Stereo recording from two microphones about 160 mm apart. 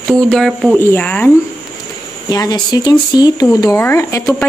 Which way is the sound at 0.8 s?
10° left (ahead or behind).